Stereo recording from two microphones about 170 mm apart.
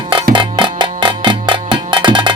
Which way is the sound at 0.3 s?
25° right (ahead or behind).